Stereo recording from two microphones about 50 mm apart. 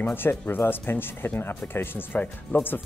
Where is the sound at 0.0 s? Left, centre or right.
Left.